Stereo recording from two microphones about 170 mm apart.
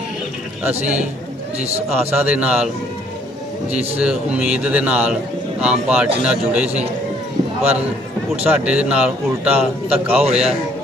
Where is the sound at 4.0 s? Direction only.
5° right (ahead or behind).